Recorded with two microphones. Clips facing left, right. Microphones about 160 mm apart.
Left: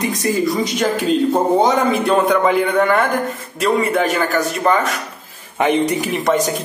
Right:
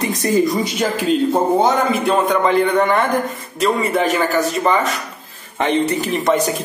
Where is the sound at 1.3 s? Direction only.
Centre (ahead or behind).